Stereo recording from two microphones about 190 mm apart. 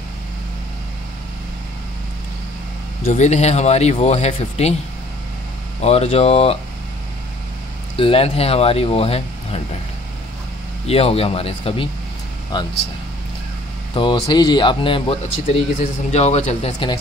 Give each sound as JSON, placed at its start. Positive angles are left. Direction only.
{"t": 3.1, "sound": "speech", "side_deg": 35}
{"t": 5.8, "sound": "speech", "side_deg": 35}
{"t": 7.9, "sound": "speech", "side_deg": 30}
{"t": 10.9, "sound": "speech", "side_deg": 30}
{"t": 13.9, "sound": "speech", "side_deg": 25}